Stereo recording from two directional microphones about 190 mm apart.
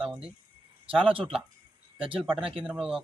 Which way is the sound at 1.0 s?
30° right (ahead or behind).